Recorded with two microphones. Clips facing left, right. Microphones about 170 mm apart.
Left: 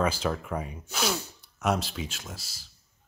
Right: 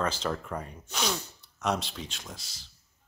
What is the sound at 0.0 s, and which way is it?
Speech, 10° left (ahead or behind).